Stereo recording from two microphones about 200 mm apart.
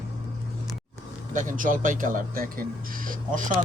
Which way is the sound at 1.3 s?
40° right (ahead or behind).